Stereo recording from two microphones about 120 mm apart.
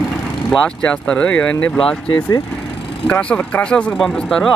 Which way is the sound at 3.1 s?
10° left (ahead or behind).